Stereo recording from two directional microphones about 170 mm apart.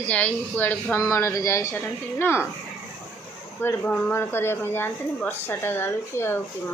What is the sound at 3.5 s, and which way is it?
Speech, 10° left (ahead or behind).